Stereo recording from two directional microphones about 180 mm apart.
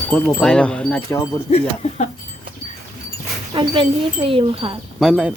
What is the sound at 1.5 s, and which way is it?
Speech, 35° left (ahead or behind).